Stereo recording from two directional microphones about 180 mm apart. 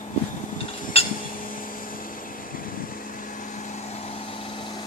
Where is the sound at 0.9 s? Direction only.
35° left (ahead or behind).